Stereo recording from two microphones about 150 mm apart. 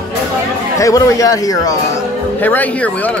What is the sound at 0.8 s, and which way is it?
Speech, 20° left (ahead or behind).